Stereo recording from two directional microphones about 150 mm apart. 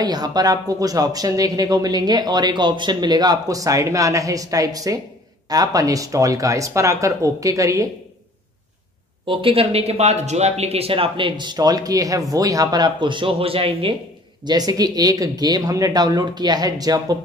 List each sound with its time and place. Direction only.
0.0 s speech: 25° right (ahead or behind)
9.2 s speech: 35° right (ahead or behind)
14.4 s speech: 25° right (ahead or behind)